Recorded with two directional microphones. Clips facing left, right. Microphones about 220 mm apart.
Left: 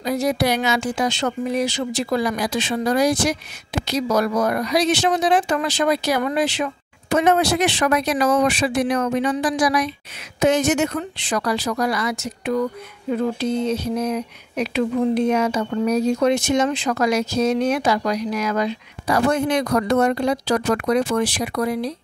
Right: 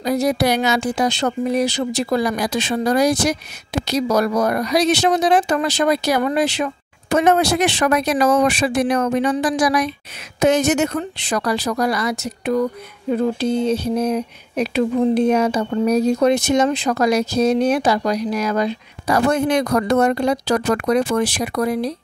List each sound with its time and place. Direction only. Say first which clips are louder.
0.0 s speech: right 2 dB; 40° right (ahead or behind)